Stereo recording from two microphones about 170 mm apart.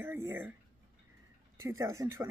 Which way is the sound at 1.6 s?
15° right (ahead or behind).